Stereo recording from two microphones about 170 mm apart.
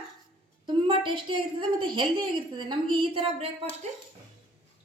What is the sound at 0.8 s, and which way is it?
A woman's voice, 30° right (ahead or behind).